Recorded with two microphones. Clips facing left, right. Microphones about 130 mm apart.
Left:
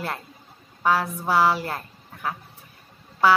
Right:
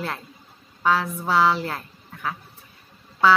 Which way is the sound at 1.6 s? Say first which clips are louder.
Even; 30° left (ahead or behind).